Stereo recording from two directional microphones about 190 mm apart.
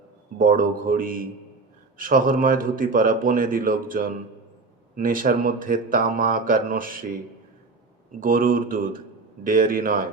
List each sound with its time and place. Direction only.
0.3 s speech: 45° right (ahead or behind)
8.2 s speech: 45° right (ahead or behind)